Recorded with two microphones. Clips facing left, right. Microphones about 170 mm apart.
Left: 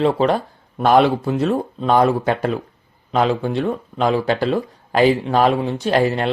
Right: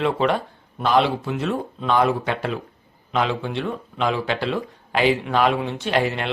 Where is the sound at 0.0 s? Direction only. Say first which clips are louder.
Left 4 dB; 35° left (ahead or behind).